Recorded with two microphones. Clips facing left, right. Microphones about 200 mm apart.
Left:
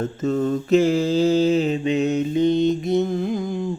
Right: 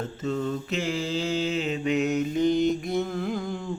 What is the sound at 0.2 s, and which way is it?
Mantra, 45° left (ahead or behind).